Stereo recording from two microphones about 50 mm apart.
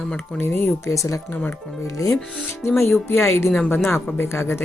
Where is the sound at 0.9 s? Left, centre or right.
Left.